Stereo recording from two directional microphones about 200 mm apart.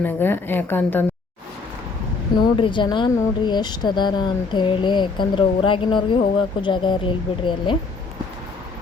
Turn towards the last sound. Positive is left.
turn(degrees=25)  # may be behind; listen again after turning